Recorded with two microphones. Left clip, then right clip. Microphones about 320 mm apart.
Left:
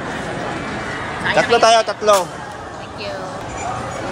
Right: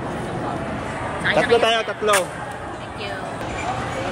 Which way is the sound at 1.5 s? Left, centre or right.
Centre.